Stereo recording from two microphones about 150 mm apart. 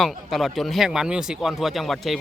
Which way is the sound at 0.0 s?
Centre (ahead or behind).